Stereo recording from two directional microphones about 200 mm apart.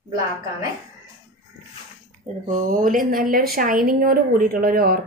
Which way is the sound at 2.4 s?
40° right (ahead or behind).